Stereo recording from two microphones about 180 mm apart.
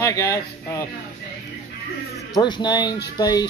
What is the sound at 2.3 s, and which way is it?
Speech, 25° left (ahead or behind).